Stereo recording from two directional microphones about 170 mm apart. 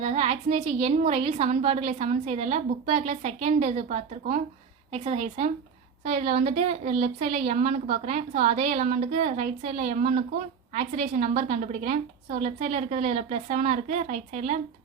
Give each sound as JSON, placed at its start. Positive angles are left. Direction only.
{"t": 0.0, "sound": "a woman's voice", "side_deg": -40}